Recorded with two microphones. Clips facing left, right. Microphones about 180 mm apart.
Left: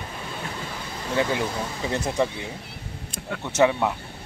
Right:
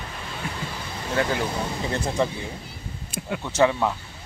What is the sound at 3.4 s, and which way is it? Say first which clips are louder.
Speech: left 1 dB; 20° left (ahead or behind).